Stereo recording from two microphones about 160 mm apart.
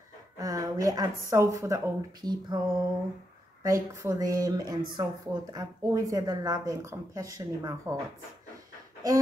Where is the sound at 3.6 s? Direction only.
20° right (ahead or behind).